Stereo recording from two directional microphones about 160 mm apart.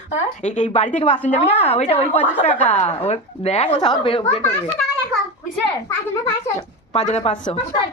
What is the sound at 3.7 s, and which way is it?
Speech, 30° left (ahead or behind).